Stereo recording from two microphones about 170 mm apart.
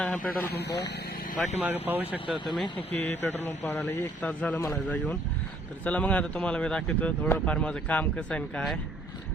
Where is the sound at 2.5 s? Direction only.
30° left (ahead or behind).